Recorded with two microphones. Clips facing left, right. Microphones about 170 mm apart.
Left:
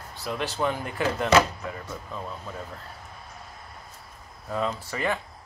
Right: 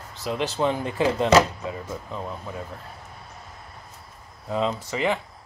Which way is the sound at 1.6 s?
15° right (ahead or behind).